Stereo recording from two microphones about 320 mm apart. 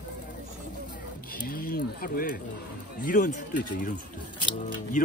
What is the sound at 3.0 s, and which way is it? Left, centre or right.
Speech, left.